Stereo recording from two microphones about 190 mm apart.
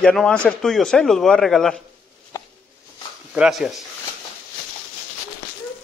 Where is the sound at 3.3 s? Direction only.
5° right (ahead or behind).